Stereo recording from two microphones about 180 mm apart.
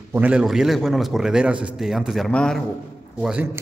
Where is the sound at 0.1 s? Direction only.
5° right (ahead or behind).